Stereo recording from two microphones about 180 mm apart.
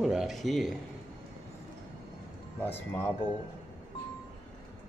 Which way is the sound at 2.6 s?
10° left (ahead or behind).